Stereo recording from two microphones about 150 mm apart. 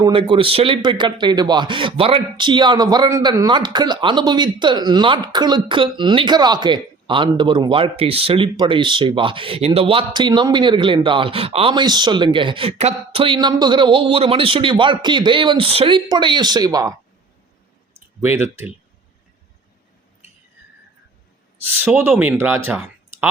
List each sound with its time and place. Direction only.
0.0 s speech: 35° right (ahead or behind)
18.2 s speech: 15° right (ahead or behind)
21.7 s speech: 15° right (ahead or behind)